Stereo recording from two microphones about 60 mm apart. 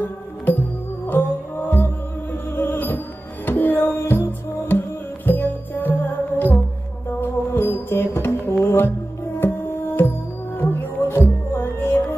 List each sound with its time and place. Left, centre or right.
0.0 s music: left
7.2 s music: left